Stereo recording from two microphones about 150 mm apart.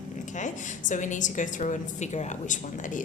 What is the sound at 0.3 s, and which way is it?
A woman's voice, 55° left (ahead or behind).